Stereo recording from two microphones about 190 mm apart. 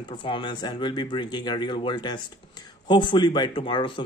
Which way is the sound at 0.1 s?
25° left (ahead or behind).